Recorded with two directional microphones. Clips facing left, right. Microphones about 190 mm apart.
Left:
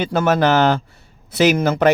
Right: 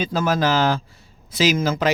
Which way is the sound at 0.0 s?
65° left (ahead or behind).